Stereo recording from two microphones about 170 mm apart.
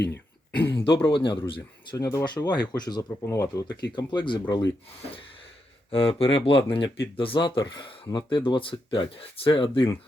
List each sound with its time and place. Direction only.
0.1 s throat clearing: 10° left (ahead or behind)
0.9 s speech: 30° left (ahead or behind)
5.9 s speech: 30° left (ahead or behind)